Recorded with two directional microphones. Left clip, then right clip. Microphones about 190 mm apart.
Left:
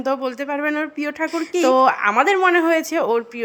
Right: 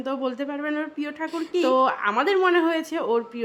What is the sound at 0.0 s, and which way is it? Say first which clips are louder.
Speech: left 5 dB; 25° left (ahead or behind).